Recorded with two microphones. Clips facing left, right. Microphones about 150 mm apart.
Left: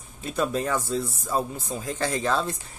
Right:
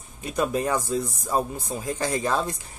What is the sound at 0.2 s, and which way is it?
Speech, 10° right (ahead or behind).